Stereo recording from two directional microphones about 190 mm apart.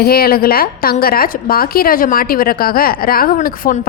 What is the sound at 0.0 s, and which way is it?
A woman's voice, 55° left (ahead or behind).